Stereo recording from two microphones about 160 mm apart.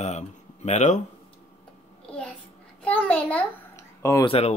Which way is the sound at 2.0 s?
5° left (ahead or behind).